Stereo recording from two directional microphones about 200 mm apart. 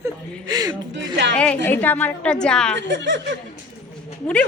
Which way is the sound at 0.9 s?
60° right (ahead or behind).